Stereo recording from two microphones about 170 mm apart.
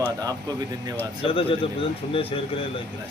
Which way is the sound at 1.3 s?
35° left (ahead or behind).